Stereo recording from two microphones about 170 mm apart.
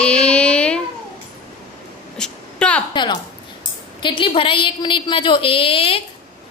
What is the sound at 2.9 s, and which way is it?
A woman's voice, 25° left (ahead or behind).